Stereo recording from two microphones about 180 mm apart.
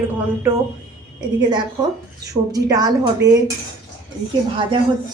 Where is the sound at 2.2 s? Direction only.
20° right (ahead or behind).